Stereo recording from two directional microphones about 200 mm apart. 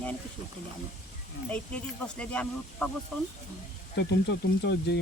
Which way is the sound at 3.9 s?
55° left (ahead or behind).